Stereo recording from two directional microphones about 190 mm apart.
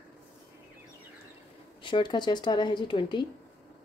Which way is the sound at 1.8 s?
25° left (ahead or behind).